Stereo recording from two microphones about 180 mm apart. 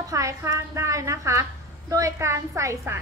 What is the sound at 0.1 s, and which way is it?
Speech, 15° right (ahead or behind).